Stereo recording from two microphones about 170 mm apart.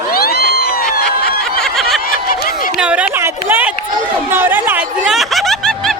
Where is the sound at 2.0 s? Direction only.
60° left (ahead or behind).